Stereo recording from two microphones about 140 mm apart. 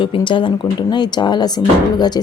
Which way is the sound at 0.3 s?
35° left (ahead or behind).